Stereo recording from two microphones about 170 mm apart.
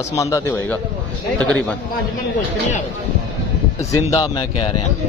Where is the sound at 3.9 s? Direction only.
20° left (ahead or behind).